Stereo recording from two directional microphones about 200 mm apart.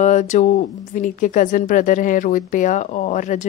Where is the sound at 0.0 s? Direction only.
35° left (ahead or behind).